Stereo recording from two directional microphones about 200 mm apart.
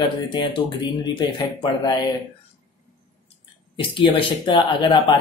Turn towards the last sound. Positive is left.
turn(degrees=25)  # may be behind; listen again after turning